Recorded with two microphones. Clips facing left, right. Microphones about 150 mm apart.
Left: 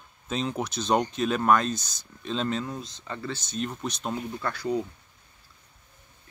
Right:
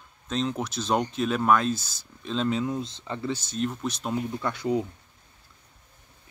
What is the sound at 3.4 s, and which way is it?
Speech, centre (ahead or behind).